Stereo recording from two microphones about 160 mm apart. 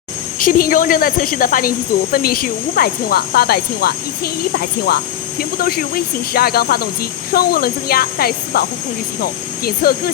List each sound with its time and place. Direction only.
0.3 s speech: 55° left (ahead or behind); by 4.3 s 75° left (ahead or behind)
5.4 s speech: 65° left (ahead or behind)